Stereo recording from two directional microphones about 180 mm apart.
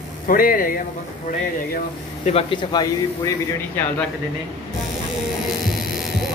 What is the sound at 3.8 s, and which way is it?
Speech, 10° left (ahead or behind).